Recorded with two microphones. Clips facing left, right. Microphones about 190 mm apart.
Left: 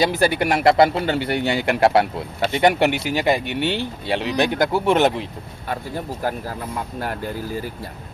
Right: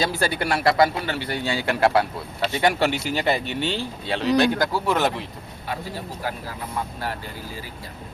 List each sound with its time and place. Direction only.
0.0 s speech: 15° left (ahead or behind)
3.4 s speech: 60° left (ahead or behind)
3.7 s speech: 15° left (ahead or behind)
6.2 s speech: 50° left (ahead or behind)